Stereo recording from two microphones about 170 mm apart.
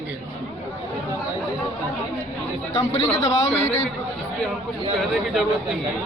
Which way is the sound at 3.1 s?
40° left (ahead or behind).